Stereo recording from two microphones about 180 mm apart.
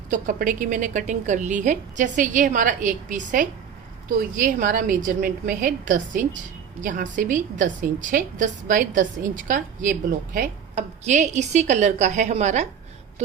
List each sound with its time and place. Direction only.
0.1 s a woman's voice: 50° right (ahead or behind)